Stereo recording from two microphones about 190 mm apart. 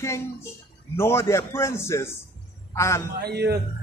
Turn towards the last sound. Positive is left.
turn(degrees=-60)  # may be behind; listen again after turning